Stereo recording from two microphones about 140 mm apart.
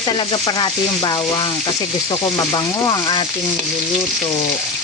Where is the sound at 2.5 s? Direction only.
30° left (ahead or behind).